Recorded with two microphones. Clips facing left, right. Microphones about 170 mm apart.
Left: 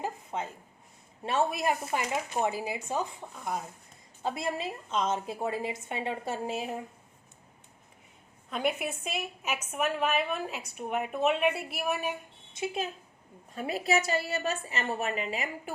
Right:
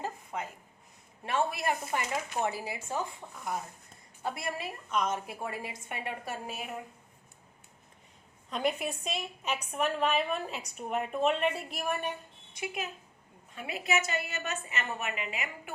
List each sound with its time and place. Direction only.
0.0 s a sound: 25° left (ahead or behind)
1.2 s a woman's voice: 20° left (ahead or behind)
8.4 s a woman's voice: 5° left (ahead or behind)
12.5 s a woman's voice: 30° left (ahead or behind)